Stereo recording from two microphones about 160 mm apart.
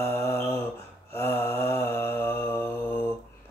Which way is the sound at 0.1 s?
15° left (ahead or behind).